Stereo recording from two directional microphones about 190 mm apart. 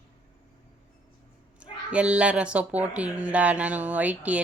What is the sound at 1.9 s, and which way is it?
A woman's voice, 5° right (ahead or behind).